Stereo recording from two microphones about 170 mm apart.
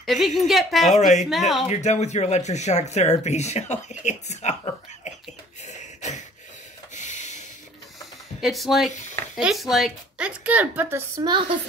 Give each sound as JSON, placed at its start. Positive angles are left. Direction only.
{"t": 0.0, "sound": "speech", "side_deg": 0}
{"t": 0.9, "sound": "speech", "side_deg": 45}
{"t": 5.6, "sound": "a sound", "side_deg": 45}
{"t": 8.0, "sound": "a sound", "side_deg": 0}
{"t": 9.4, "sound": "a woman's voice", "side_deg": 0}
{"t": 11.1, "sound": "a woman's voice", "side_deg": -25}